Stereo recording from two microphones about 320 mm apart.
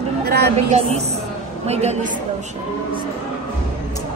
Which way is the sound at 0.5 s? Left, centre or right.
Centre.